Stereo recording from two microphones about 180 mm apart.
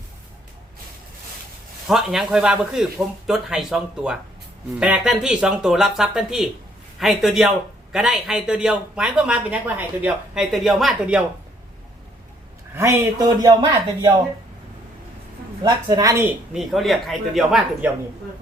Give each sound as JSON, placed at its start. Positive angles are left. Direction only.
{"t": 1.9, "sound": "speech", "side_deg": 0}
{"t": 12.7, "sound": "a man's voice", "side_deg": -15}
{"t": 15.6, "sound": "a woman's voice", "side_deg": -20}
{"t": 16.6, "sound": "speech", "side_deg": 0}